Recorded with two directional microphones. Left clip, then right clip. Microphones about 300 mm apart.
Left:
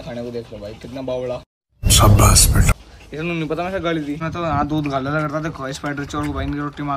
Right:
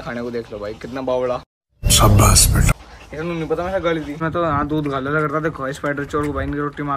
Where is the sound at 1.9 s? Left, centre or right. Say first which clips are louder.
Even; centre.